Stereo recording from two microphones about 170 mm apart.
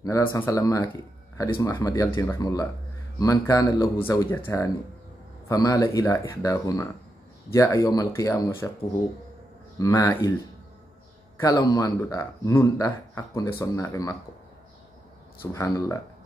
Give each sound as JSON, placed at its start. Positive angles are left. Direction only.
{"t": 0.0, "sound": "speech", "side_deg": 15}
{"t": 5.5, "sound": "speech", "side_deg": 20}
{"t": 9.8, "sound": "speech", "side_deg": 20}
{"t": 11.3, "sound": "speech", "side_deg": 20}
{"t": 15.5, "sound": "speech", "side_deg": 15}